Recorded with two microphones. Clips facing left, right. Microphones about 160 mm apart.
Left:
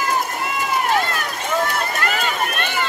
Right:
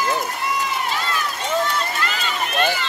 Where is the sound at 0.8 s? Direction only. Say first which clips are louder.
Left 4 dB; 55° left (ahead or behind).